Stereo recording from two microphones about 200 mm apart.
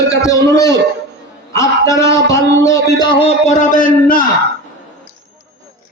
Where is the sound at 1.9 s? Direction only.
15° left (ahead or behind).